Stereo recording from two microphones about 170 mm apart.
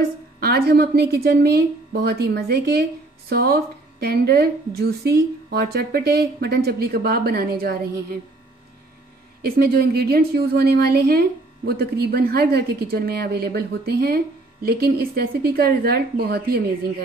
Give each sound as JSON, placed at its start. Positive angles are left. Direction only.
{"t": 0.4, "sound": "a woman's voice", "side_deg": -70}
{"t": 9.4, "sound": "a woman's voice", "side_deg": -65}